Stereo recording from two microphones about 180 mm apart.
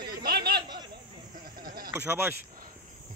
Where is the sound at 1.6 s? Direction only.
55° right (ahead or behind).